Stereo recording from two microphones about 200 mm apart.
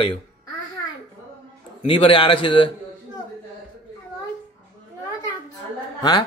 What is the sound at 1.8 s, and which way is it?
Speech, 30° left (ahead or behind).